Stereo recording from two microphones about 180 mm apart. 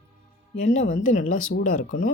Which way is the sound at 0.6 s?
40° left (ahead or behind).